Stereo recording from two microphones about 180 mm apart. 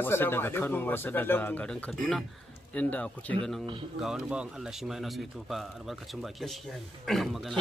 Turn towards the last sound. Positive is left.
turn(degrees=0)  # may be behind; listen again after turning